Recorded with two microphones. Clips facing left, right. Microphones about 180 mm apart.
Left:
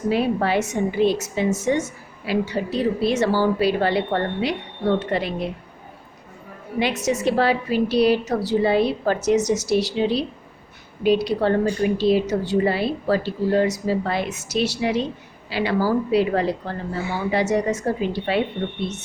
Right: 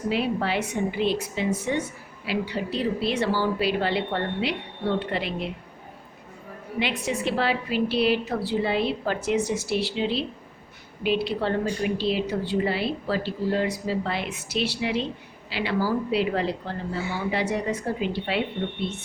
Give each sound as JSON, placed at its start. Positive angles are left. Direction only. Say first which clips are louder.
{"t": 0.1, "sound": "a woman's voice", "louder": "left 5 dB", "side_deg": 45}
{"t": 6.7, "sound": "a woman's voice", "louder": "left 5 dB", "side_deg": 40}